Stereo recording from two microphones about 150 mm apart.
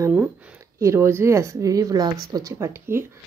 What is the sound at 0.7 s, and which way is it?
A woman's voice, 20° right (ahead or behind).